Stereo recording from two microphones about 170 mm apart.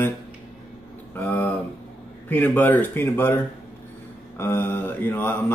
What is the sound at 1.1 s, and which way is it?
Speech, 10° left (ahead or behind).